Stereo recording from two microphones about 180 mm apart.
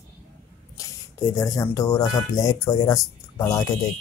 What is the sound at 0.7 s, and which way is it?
Speech, 20° left (ahead or behind).